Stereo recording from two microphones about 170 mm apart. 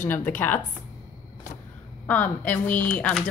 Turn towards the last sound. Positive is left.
turn(degrees=5)  # may be behind; listen again after turning